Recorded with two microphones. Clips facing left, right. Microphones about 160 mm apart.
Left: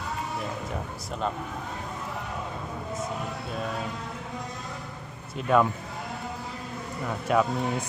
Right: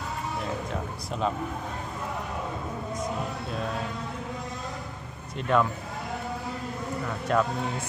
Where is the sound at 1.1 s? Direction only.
Centre (ahead or behind).